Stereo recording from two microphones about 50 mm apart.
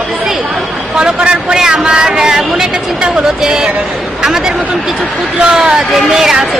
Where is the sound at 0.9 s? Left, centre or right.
Centre.